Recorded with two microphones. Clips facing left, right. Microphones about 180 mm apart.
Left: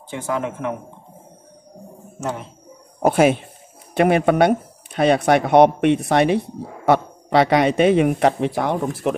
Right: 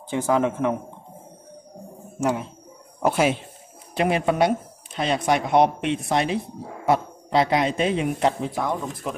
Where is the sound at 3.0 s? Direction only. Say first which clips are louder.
Left 5 dB; 50° left (ahead or behind).